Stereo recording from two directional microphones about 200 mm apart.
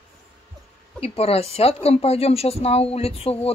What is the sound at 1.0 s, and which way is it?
Speech, 30° left (ahead or behind).